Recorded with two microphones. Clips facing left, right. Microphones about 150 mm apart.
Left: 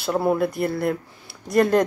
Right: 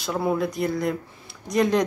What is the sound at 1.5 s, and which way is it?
Speech, 55° left (ahead or behind).